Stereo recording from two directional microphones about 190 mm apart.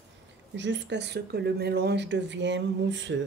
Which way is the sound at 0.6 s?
70° right (ahead or behind).